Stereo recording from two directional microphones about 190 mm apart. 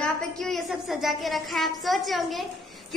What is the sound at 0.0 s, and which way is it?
A woman's voice, centre (ahead or behind).